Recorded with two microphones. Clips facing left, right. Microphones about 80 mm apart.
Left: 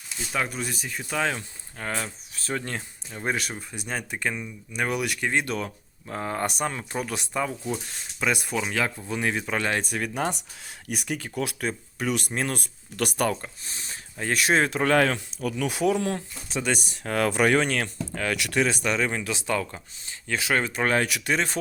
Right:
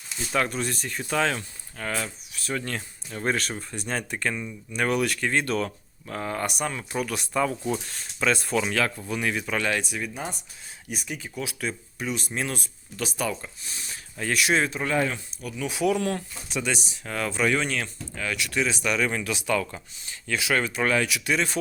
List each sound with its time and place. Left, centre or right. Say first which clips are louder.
0.3 s speech: right 3 dB; centre
1.4 s speech: right 1 dB; left
3.1 s speech: right 2 dB; centre
6.1 s speech: left 1 dB; left
9.0 s speech: even; left
10.0 s speech: left 5 dB; left
10.8 s speech: left 4 dB; left
11.9 s speech: left 4 dB; left
13.4 s speech: left 1 dB; left
14.7 s speech: left 4 dB; left
15.8 s speech: right 1 dB; left
16.6 s speech: left 2 dB; left
18.9 s speech: even; left